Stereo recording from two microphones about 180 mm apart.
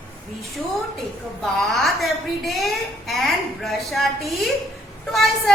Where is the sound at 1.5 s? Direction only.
Centre (ahead or behind).